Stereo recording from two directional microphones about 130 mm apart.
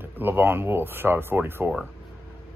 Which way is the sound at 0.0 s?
15° right (ahead or behind).